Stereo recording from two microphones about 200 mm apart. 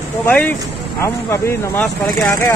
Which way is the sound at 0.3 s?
10° left (ahead or behind).